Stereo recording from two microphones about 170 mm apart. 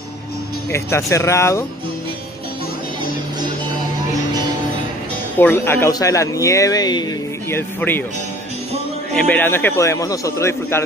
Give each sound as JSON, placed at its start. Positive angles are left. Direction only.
{"t": 0.7, "sound": "a man's voice", "side_deg": 15}
{"t": 5.4, "sound": "speech", "side_deg": 15}
{"t": 7.4, "sound": "a man's voice", "side_deg": 15}
{"t": 9.1, "sound": "a man's voice", "side_deg": 10}